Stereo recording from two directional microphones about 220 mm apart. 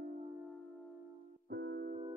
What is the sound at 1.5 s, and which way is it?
Music, 50° right (ahead or behind).